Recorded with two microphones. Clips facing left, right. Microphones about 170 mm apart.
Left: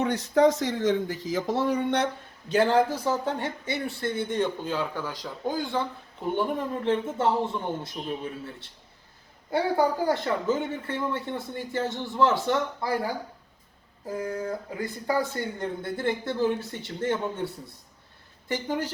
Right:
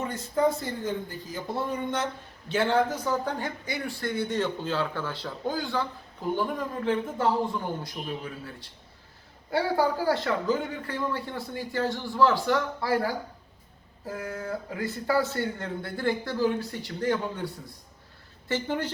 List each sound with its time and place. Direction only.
0.0 s speech: 75° left (ahead or behind)
2.5 s speech: 40° left (ahead or behind)
2.9 s a man's voice: 25° left (ahead or behind)
14.1 s a man's voice: 20° left (ahead or behind)
18.4 s a woman's voice: 15° left (ahead or behind)